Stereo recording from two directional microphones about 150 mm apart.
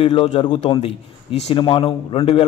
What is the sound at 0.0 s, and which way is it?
A man's voice, 35° left (ahead or behind).